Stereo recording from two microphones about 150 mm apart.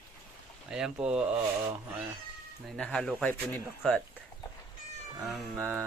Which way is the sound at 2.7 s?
5° left (ahead or behind).